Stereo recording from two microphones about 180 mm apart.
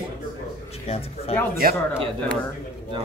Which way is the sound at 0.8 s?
35° left (ahead or behind).